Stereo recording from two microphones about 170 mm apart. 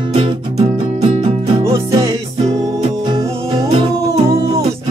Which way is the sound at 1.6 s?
20° right (ahead or behind).